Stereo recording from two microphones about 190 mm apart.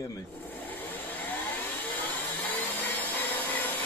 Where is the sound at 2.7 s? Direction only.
10° left (ahead or behind).